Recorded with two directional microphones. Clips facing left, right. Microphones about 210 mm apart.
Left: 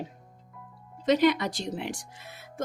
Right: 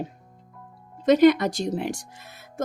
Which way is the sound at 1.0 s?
50° right (ahead or behind).